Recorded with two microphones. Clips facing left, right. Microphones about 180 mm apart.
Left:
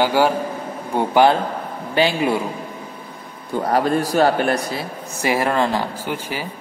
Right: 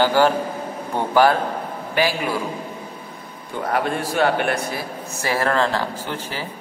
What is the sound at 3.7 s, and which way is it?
A man's voice, 40° left (ahead or behind).